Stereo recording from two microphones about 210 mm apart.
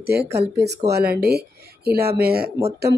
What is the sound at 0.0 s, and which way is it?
Speech, 50° right (ahead or behind).